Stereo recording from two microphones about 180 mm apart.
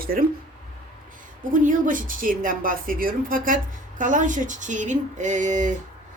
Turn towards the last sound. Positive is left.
turn(degrees=-45)  # may be behind; listen again after turning